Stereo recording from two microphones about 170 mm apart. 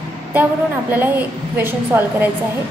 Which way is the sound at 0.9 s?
10° right (ahead or behind).